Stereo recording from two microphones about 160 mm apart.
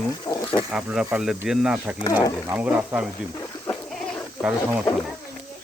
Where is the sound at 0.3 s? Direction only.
25° left (ahead or behind).